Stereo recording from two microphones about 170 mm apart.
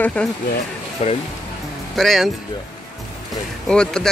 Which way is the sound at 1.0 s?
40° left (ahead or behind).